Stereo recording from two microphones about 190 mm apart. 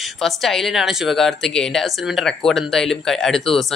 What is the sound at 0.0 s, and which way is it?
Speech, centre (ahead or behind).